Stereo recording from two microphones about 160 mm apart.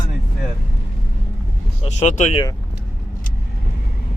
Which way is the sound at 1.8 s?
45° left (ahead or behind).